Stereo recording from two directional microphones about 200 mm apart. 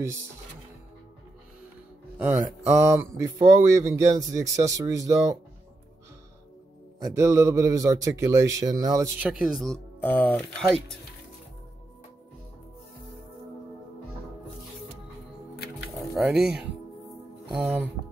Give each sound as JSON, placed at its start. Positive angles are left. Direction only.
{"t": 2.1, "sound": "mantra", "side_deg": -10}
{"t": 2.7, "sound": "speech", "side_deg": -15}
{"t": 7.1, "sound": "speech", "side_deg": -15}
{"t": 9.3, "sound": "speech", "side_deg": 0}
{"t": 16.0, "sound": "speech", "side_deg": -5}